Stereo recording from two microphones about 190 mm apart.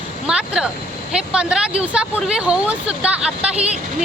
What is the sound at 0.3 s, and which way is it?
Speech, 5° right (ahead or behind).